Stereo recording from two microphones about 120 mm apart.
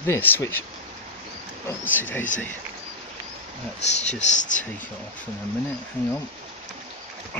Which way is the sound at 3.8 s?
80° left.